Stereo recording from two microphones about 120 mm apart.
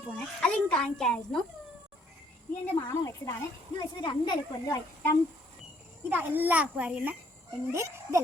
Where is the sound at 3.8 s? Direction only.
35° left (ahead or behind).